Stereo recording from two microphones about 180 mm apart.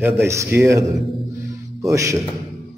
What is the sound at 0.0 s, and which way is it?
A man's voice, 15° right (ahead or behind).